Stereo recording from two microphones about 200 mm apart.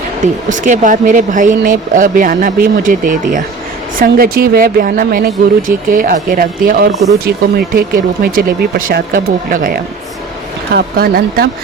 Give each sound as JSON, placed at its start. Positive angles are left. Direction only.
{"t": 0.5, "sound": "speech", "side_deg": -40}